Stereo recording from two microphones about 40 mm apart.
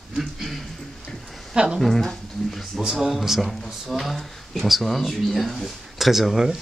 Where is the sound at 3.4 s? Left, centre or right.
Centre.